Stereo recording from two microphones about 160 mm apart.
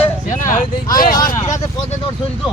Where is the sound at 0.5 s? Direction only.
60° left (ahead or behind).